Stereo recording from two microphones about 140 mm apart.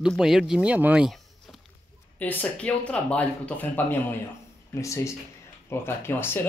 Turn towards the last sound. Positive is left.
turn(degrees=15)  # may be behind; listen again after turning